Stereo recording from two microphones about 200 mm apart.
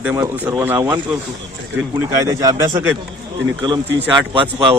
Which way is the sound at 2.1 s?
15° right (ahead or behind).